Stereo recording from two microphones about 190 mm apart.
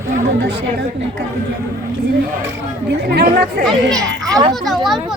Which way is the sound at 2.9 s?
60° right (ahead or behind).